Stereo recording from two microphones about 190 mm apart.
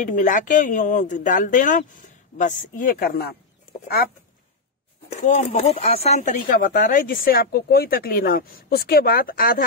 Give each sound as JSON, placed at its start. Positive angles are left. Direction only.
{"t": 0.0, "sound": "speech", "side_deg": 45}
{"t": 5.1, "sound": "speech", "side_deg": 40}